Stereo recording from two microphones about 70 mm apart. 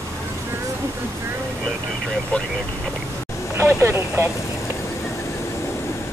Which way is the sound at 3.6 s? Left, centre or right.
Right.